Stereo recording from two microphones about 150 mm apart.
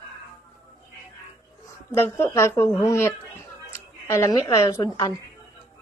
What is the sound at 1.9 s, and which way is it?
A woman's voice, 15° left (ahead or behind).